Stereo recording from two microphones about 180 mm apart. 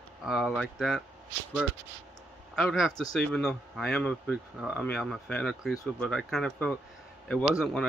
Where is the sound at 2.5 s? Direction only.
Centre (ahead or behind).